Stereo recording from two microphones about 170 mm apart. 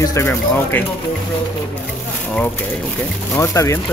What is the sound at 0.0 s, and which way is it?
Speech, 20° left (ahead or behind).